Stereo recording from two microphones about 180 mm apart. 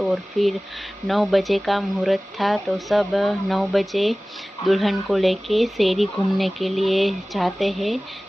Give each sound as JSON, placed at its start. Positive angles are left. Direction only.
{"t": 0.0, "sound": "speech", "side_deg": 0}